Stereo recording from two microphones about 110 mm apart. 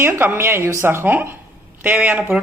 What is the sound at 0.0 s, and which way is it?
Speech, 20° right (ahead or behind).